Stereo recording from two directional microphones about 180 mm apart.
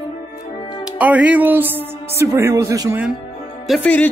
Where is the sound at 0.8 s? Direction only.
5° right (ahead or behind).